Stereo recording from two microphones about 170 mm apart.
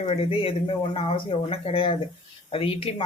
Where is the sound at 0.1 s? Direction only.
35° left (ahead or behind).